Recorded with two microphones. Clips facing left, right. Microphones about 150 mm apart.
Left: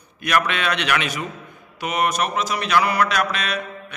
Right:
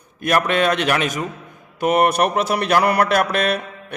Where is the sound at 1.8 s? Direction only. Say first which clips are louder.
Right 6 dB; 55° right (ahead or behind).